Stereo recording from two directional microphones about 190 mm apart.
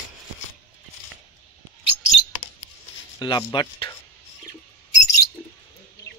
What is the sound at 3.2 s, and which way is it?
Speech, 25° left (ahead or behind).